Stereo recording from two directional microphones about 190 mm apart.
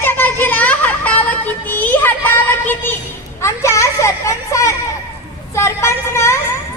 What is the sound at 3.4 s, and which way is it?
Speech, 15° left (ahead or behind).